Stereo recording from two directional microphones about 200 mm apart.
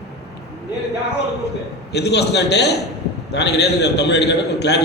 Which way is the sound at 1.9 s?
55° left (ahead or behind).